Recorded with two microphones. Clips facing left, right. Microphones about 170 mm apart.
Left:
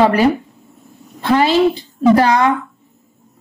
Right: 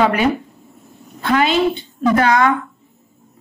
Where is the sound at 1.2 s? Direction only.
30° left (ahead or behind).